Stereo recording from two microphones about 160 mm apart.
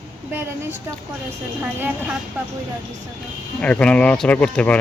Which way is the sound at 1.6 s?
10° right (ahead or behind).